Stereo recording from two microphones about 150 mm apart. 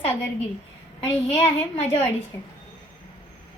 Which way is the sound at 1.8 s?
15° left (ahead or behind).